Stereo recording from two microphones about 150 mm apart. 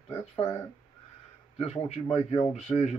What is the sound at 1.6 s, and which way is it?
Speech, 45° left (ahead or behind).